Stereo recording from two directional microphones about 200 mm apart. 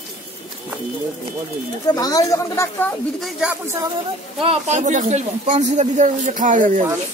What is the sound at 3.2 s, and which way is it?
Speech, 5° right (ahead or behind).